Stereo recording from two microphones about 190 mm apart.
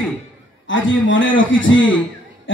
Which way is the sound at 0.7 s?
90° left.